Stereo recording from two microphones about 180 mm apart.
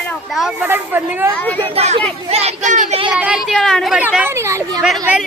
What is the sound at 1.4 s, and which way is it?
Speech, 10° left (ahead or behind).